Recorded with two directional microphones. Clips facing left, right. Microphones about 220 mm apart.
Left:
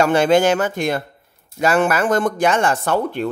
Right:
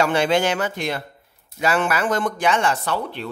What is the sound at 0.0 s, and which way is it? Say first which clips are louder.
Speech: left 5 dB; 45° left (ahead or behind).